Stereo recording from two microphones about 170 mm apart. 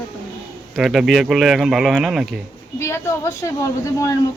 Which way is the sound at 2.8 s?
15° left (ahead or behind).